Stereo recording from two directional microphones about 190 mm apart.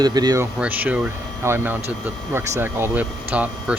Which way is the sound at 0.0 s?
20° right (ahead or behind).